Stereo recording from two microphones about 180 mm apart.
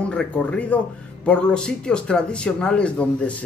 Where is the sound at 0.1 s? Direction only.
5° left (ahead or behind).